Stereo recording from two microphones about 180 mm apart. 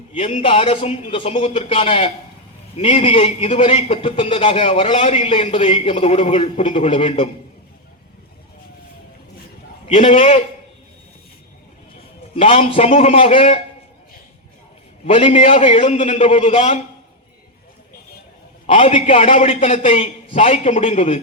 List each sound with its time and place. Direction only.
0.1 s a man's voice: 35° left (ahead or behind)
9.8 s a man's voice: 35° left (ahead or behind)
12.3 s a man's voice: 30° left (ahead or behind)
15.0 s a man's voice: 35° left (ahead or behind)
18.6 s a man's voice: 35° left (ahead or behind)